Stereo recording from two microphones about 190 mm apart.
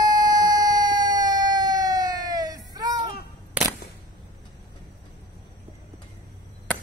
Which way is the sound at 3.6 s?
5° right (ahead or behind).